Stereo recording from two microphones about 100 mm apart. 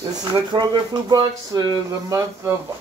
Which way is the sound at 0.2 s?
45° right (ahead or behind).